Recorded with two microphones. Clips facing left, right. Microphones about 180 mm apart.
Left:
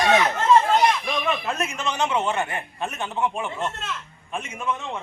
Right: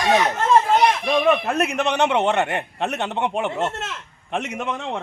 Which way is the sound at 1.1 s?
65° right (ahead or behind).